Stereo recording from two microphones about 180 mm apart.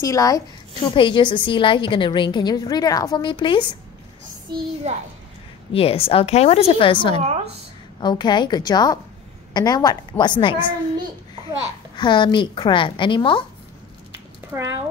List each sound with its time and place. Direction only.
0.0 s a woman's voice: 20° left (ahead or behind)
4.5 s a child's voice: 25° right (ahead or behind)
4.9 s a child's voice: 40° right (ahead or behind)
5.7 s a woman's voice: 30° left (ahead or behind)
12.0 s a woman's voice: 25° left (ahead or behind)
14.1 s a sound: 15° right (ahead or behind)